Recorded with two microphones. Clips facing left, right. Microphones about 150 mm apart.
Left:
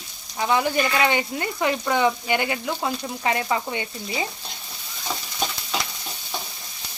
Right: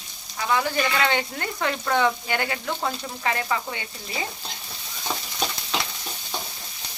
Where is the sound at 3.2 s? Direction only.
20° left (ahead or behind).